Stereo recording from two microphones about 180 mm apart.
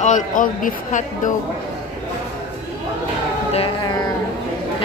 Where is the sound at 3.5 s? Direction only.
25° left (ahead or behind).